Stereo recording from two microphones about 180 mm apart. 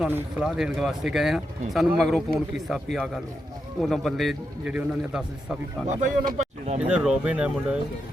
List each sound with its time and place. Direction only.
0.0 s speech: 5° right (ahead or behind)
5.9 s speech: 45° right (ahead or behind)
6.7 s speech: 5° right (ahead or behind)